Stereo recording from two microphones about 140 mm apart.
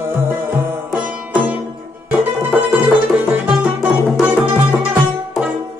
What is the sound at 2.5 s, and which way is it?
Music, 10° right (ahead or behind).